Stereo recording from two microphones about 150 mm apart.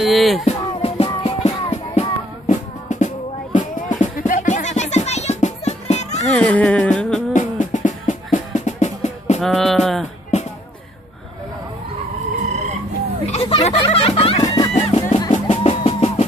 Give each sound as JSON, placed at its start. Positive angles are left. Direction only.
{"t": 0.0, "sound": "speech", "side_deg": 0}
{"t": 0.5, "sound": "music", "side_deg": 40}
{"t": 6.2, "sound": "music", "side_deg": 10}
{"t": 7.3, "sound": "music", "side_deg": 55}
{"t": 9.4, "sound": "music", "side_deg": 0}
{"t": 13.3, "sound": "a sound", "side_deg": 40}
{"t": 13.8, "sound": "music", "side_deg": 40}